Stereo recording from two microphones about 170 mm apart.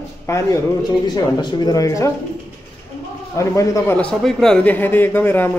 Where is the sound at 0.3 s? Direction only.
15° left (ahead or behind).